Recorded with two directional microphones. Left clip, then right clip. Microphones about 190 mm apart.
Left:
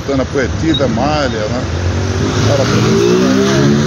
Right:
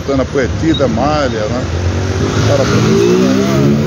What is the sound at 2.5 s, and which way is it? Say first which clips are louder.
Speech: right 1 dB; 25° right (ahead or behind).